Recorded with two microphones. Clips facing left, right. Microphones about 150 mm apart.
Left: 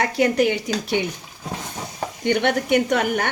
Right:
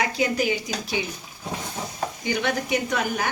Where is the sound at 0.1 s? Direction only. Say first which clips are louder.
Left 5 dB; 65° left (ahead or behind).